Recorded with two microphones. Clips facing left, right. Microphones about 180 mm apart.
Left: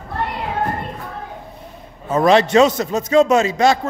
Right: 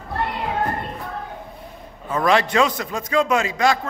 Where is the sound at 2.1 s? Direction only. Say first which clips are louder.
Left 6 dB; 25° left (ahead or behind).